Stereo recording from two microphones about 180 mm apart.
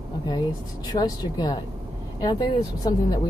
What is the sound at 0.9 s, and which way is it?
Speech, 20° left (ahead or behind).